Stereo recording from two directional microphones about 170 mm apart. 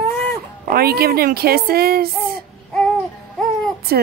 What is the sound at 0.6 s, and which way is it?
A woman's voice, 65° right (ahead or behind).